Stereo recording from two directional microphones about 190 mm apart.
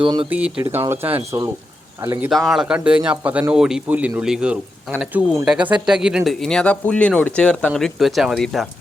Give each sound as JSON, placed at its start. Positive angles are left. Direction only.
{"t": 0.0, "sound": "speech", "side_deg": -30}
{"t": 0.3, "sound": "speech", "side_deg": -5}
{"t": 2.3, "sound": "speech", "side_deg": 0}